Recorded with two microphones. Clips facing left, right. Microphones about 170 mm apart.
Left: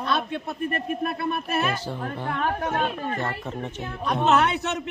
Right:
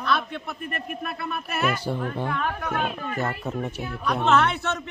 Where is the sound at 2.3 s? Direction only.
35° left (ahead or behind).